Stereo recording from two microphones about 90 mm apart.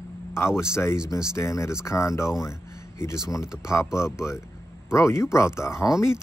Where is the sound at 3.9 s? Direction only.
30° left (ahead or behind).